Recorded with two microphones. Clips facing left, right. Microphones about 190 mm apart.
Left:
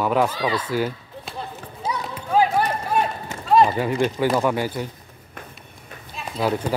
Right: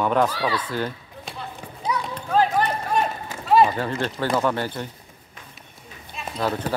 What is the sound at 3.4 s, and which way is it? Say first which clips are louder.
Run: left 1 dB; 5° right (ahead or behind).